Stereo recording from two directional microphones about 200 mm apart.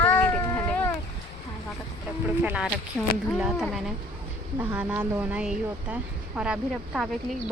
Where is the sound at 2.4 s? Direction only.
10° right (ahead or behind).